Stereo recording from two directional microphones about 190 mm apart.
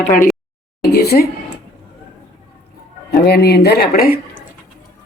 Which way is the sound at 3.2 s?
55° left (ahead or behind).